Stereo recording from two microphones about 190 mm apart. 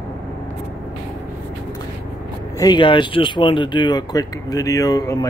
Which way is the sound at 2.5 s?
25° left (ahead or behind).